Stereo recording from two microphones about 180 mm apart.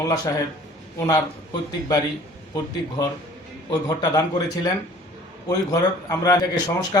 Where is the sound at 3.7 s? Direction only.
20° left (ahead or behind).